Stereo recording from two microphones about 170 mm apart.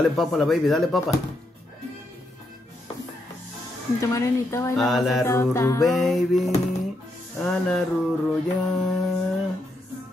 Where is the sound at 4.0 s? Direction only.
15° left (ahead or behind).